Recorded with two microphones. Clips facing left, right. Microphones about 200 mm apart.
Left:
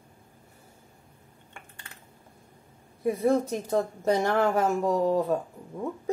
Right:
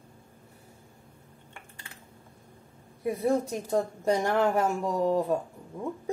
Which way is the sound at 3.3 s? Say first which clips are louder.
Left 2 dB; 15° right (ahead or behind).